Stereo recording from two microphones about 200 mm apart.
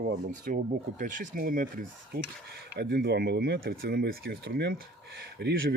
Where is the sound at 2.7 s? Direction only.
55° right (ahead or behind).